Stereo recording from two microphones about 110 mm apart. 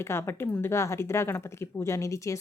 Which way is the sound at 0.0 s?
25° left (ahead or behind).